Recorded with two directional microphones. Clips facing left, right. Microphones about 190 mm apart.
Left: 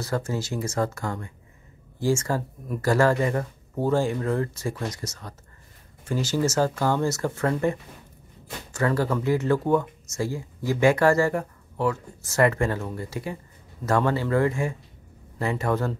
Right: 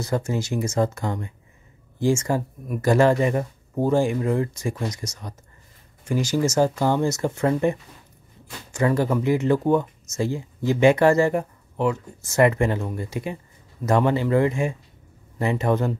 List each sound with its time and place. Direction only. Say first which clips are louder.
0.0 s speech: right 3 dB; 15° right (ahead or behind)
8.7 s speech: right 3 dB; 15° right (ahead or behind)